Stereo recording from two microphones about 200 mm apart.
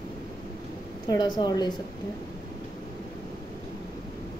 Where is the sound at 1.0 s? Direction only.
20° left (ahead or behind).